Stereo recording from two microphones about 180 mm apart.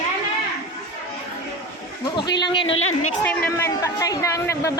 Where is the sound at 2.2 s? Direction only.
25° left (ahead or behind).